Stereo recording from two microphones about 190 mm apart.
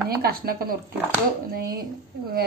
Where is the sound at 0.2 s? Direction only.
55° right (ahead or behind).